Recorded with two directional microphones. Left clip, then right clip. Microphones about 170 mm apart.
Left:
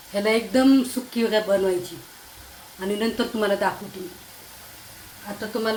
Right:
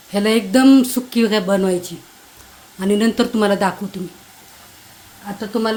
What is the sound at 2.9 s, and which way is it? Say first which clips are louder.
Speech: right 7 dB; 65° right (ahead or behind).